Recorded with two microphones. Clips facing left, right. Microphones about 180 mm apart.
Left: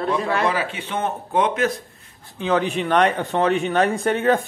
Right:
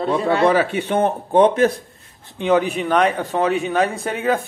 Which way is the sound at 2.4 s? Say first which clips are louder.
Right 3 dB; 10° right (ahead or behind).